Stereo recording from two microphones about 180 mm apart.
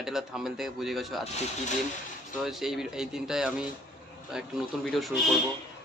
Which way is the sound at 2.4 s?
Centre (ahead or behind).